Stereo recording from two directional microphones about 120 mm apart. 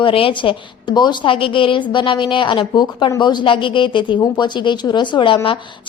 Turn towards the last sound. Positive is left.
turn(degrees=45)  # may be behind; listen again after turning